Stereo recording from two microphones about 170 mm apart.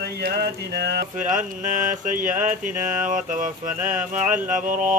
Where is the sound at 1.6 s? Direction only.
50° right (ahead or behind).